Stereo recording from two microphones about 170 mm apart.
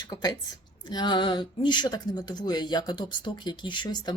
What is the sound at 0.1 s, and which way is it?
Speech, 25° left (ahead or behind).